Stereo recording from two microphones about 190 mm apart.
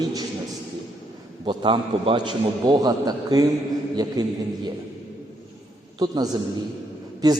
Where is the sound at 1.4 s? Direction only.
25° right (ahead or behind).